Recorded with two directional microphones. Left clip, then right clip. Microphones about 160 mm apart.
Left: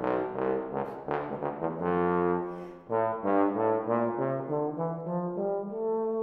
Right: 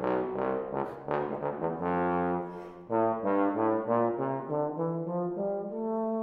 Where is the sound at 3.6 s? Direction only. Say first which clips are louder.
Even; 45° left (ahead or behind).